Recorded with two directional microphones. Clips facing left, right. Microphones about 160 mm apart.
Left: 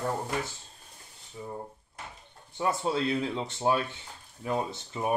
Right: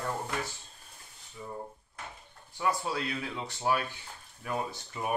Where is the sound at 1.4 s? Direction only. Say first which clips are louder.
Left 2 dB; 25° left (ahead or behind).